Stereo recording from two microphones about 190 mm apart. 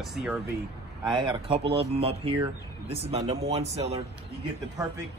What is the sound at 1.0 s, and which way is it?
A man's voice, 25° right (ahead or behind).